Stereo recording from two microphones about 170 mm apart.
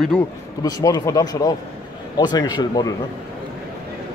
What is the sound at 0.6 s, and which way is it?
Speech, 20° left (ahead or behind).